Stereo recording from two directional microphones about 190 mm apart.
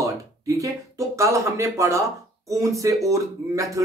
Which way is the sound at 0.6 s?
15° right (ahead or behind).